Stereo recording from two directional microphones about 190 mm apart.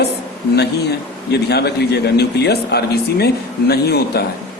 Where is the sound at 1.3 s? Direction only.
60° left (ahead or behind).